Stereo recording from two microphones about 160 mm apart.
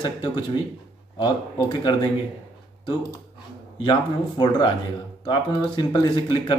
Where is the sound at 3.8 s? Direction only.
30° left (ahead or behind).